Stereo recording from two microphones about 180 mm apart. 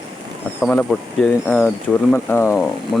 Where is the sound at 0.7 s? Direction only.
5° left (ahead or behind).